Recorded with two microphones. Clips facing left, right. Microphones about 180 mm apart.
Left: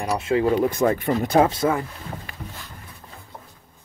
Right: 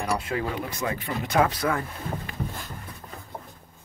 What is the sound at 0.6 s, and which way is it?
Speech, 50° left (ahead or behind).